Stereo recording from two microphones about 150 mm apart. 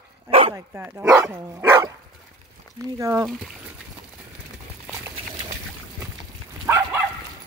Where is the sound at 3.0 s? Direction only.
20° right (ahead or behind).